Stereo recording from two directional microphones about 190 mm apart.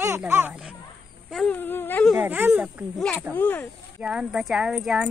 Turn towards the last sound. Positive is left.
turn(degrees=0)  # may be behind; listen again after turning